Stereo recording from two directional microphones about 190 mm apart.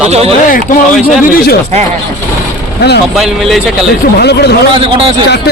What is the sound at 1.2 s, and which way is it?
Speech, 50° left (ahead or behind).